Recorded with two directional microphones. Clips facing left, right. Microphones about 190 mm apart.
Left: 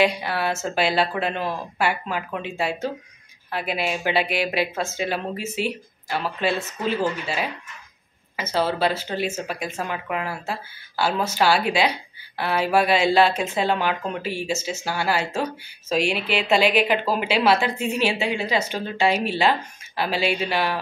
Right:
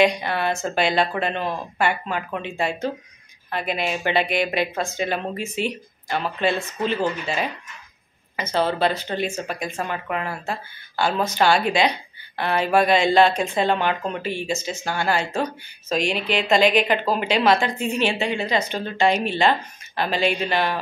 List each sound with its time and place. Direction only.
0.0 s speech: 5° left (ahead or behind)
8.4 s speech: 5° left (ahead or behind)